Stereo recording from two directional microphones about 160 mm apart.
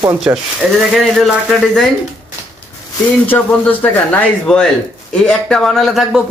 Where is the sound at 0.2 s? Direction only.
5° right (ahead or behind).